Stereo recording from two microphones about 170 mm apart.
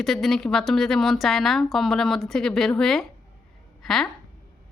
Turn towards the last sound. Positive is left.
turn(degrees=5)  # may be behind; listen again after turning